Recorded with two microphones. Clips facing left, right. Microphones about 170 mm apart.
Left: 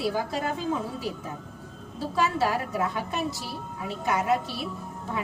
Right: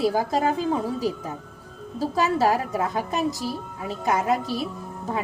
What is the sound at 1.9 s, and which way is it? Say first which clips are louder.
A woman's voice: right 3 dB; 40° right (ahead or behind).